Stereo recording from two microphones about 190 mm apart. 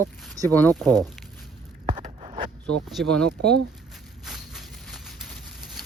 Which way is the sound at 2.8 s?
Centre (ahead or behind).